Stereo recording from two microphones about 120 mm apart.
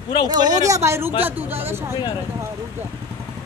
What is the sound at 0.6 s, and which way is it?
Speech, 25° right (ahead or behind).